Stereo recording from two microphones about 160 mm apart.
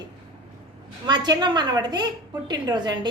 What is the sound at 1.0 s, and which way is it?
A woman's voice, 25° right (ahead or behind).